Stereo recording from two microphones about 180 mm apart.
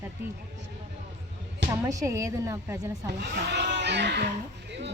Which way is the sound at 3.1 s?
70° right (ahead or behind).